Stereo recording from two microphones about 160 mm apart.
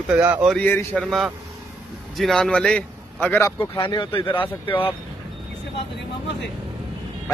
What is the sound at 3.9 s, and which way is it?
Speech, 35° left (ahead or behind).